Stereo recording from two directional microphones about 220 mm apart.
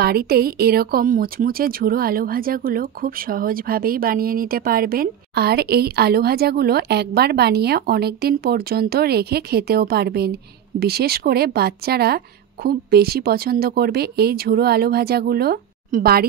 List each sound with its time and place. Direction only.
0.0 s speech: 45° right (ahead or behind)